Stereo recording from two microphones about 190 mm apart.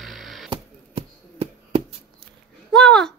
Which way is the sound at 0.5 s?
30° right (ahead or behind).